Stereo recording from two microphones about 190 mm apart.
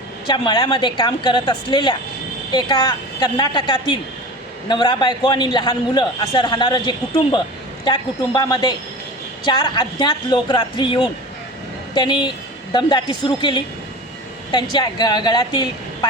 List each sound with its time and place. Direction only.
0.3 s a man's voice: 25° left (ahead or behind)